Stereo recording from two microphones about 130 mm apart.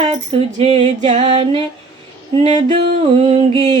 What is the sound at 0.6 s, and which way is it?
Music, 50° right (ahead or behind).